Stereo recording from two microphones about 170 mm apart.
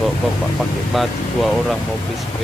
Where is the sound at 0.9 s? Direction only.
Centre (ahead or behind).